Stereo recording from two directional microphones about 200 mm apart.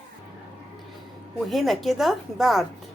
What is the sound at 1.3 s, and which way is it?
A woman's voice, centre (ahead or behind).